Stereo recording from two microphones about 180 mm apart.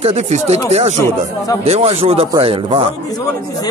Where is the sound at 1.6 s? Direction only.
35° right (ahead or behind).